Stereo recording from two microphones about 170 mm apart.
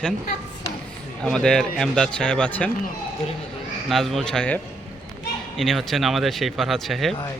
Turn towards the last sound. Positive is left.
turn(degrees=0)  # may be behind; listen again after turning